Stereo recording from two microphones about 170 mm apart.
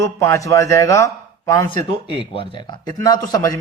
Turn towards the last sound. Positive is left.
turn(degrees=20)  # may be behind; listen again after turning